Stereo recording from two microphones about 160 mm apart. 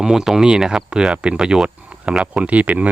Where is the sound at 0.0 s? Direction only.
Centre (ahead or behind).